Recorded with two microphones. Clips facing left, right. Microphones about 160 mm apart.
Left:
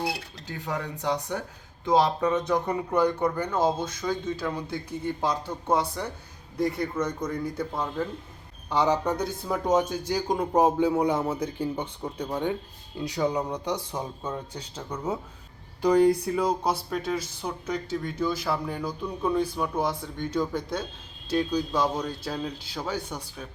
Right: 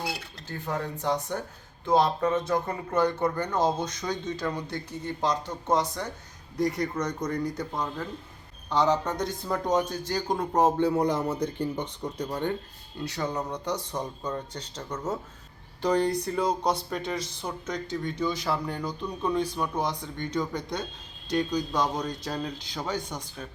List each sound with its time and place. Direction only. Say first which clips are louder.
0.4 s speech: right 1 dB; 15° left (ahead or behind)